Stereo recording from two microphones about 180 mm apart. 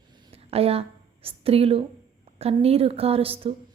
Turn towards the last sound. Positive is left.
turn(degrees=-35)  # may be behind; listen again after turning